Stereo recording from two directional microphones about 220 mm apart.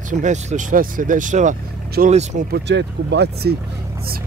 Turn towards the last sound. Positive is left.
turn(degrees=-50)  # may be behind; listen again after turning